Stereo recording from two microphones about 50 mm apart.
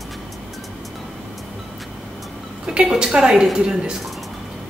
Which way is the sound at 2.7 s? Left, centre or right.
Centre.